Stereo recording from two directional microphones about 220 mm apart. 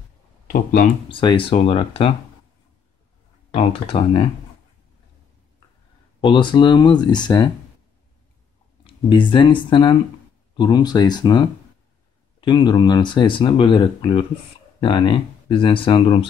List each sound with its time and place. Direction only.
0.5 s speech: 40° left (ahead or behind)
1.0 s speech: 25° left (ahead or behind)
3.5 s speech: 25° left (ahead or behind)
6.2 s speech: 20° left (ahead or behind)
8.8 s speech: 20° left (ahead or behind)